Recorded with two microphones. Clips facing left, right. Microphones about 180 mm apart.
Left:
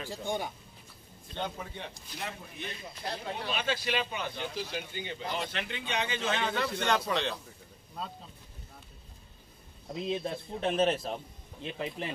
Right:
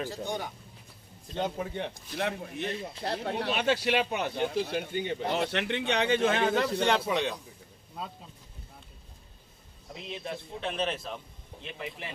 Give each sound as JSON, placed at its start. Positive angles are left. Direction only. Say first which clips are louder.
{"t": 1.3, "sound": "a man's voice", "louder": "right 5 dB", "side_deg": -40}
{"t": 1.8, "sound": "speech", "louder": "right 8 dB", "side_deg": -65}
{"t": 7.1, "sound": "a man's voice", "louder": "right 2 dB", "side_deg": -15}
{"t": 10.0, "sound": "a man's voice", "louder": "left 4 dB", "side_deg": 35}